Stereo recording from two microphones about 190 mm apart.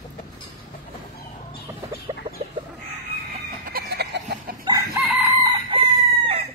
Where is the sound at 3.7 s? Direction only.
60° right (ahead or behind).